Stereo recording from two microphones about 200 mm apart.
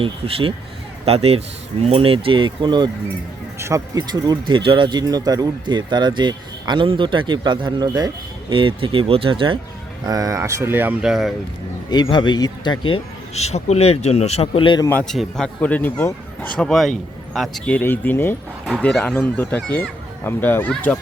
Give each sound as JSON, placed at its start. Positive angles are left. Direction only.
{"t": 0.0, "sound": "a man's voice", "side_deg": -25}
{"t": 11.9, "sound": "a man's voice", "side_deg": 20}
{"t": 14.8, "sound": "a man's voice", "side_deg": 5}